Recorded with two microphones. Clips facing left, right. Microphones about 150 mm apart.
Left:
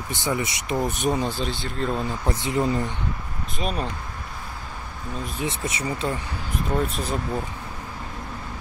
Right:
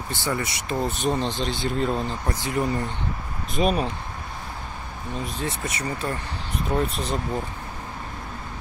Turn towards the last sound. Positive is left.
turn(degrees=5)  # may be behind; listen again after turning